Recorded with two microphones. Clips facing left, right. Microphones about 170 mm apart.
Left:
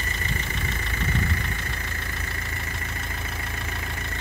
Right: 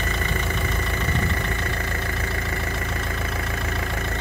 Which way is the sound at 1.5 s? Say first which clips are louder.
Right 7 dB; 80° right.